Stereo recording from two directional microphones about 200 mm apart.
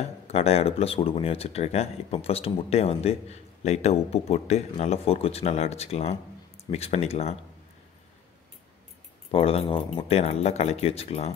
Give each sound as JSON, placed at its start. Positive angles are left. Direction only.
{"t": 0.3, "sound": "speech", "side_deg": 30}
{"t": 9.3, "sound": "speech", "side_deg": 30}